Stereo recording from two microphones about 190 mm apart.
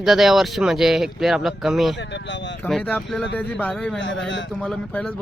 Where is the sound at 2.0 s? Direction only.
65° left (ahead or behind).